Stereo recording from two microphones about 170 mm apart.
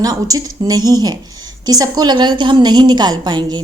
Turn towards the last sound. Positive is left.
turn(degrees=-25)  # may be behind; listen again after turning